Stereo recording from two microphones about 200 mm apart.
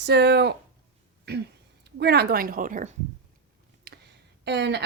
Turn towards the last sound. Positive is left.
turn(degrees=-60)  # may be behind; listen again after turning